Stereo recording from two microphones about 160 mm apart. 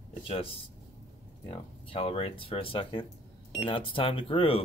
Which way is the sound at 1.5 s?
35° left (ahead or behind).